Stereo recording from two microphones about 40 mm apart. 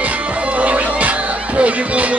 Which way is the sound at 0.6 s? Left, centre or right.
Right.